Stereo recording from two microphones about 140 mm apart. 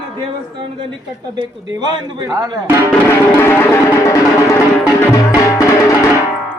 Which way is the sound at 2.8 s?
20° left (ahead or behind).